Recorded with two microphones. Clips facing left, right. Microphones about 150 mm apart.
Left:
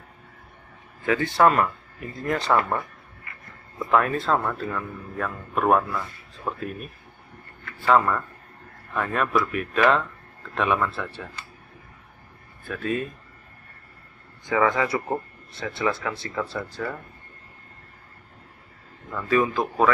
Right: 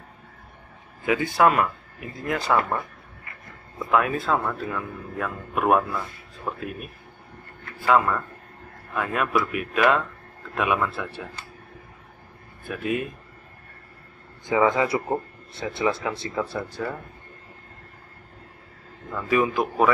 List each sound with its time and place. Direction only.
1.0 s speech: 10° right (ahead or behind)
3.9 s speech: 5° right (ahead or behind)
12.6 s speech: 15° right (ahead or behind)
14.5 s speech: 20° right (ahead or behind)
19.1 s speech: 15° right (ahead or behind)